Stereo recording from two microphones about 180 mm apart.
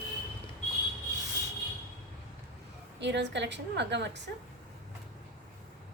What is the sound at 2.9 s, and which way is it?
A woman's voice, 75° right (ahead or behind).